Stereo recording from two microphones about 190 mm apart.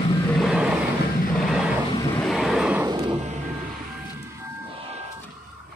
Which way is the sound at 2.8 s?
20° right (ahead or behind).